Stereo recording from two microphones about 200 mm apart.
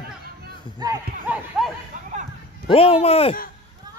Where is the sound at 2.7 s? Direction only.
30° left (ahead or behind).